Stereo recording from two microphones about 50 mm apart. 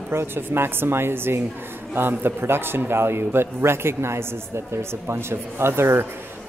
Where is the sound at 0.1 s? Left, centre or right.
Right.